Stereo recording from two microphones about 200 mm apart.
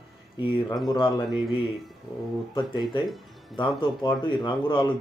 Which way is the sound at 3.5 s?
25° left (ahead or behind).